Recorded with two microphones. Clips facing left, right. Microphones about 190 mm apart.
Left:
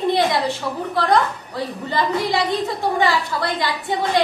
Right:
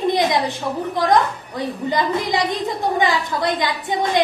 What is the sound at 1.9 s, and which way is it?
A woman's voice, 20° right (ahead or behind).